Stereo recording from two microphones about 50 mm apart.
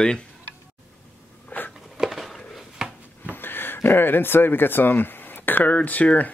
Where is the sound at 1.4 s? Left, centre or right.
Left.